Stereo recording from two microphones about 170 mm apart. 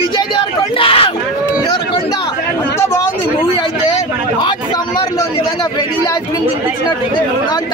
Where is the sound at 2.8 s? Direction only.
15° left (ahead or behind).